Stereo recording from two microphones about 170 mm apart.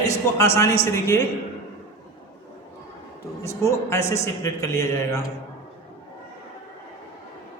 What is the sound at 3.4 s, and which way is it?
A man's voice, 15° left (ahead or behind).